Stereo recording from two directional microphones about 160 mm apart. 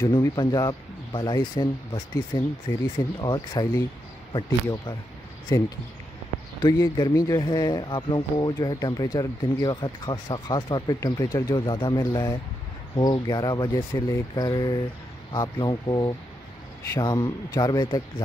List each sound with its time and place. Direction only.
0.0 s speech: 25° left (ahead or behind)